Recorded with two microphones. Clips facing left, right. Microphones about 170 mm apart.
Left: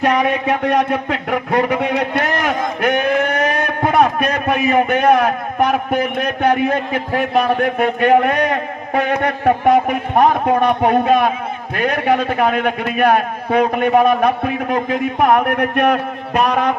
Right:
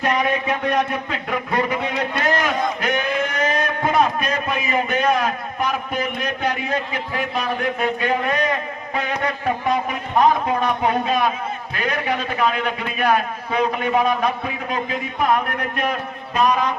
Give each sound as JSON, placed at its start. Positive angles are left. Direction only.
{"t": 0.0, "sound": "a man's voice", "side_deg": 70}